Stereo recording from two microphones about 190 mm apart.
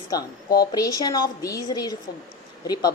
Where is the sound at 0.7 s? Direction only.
20° left (ahead or behind).